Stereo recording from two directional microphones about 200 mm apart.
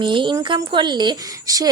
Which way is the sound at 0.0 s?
25° right (ahead or behind).